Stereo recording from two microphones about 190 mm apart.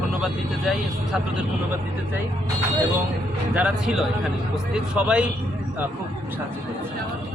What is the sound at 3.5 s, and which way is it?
Speech, 5° right (ahead or behind).